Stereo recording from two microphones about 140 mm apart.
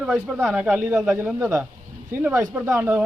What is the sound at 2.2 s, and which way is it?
Speech, 15° right (ahead or behind).